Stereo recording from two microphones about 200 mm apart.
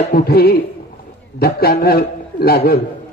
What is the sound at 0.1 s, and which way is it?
A man's voice, 50° left (ahead or behind).